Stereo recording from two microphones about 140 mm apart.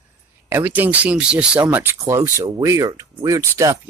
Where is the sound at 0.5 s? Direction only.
15° right (ahead or behind).